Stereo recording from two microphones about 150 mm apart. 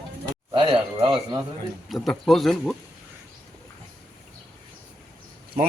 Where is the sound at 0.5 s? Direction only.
35° right (ahead or behind).